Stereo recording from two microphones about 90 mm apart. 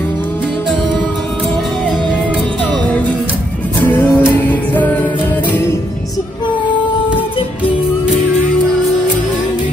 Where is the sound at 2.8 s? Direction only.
15° left (ahead or behind).